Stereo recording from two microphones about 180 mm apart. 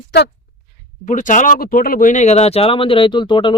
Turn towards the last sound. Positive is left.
turn(degrees=25)  # may be behind; listen again after turning